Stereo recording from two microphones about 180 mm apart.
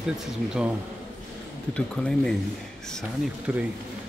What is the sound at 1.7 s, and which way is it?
Speech, 5° left (ahead or behind).